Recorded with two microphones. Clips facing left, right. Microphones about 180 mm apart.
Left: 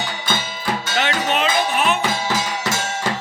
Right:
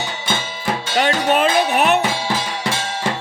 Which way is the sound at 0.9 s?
45° right (ahead or behind).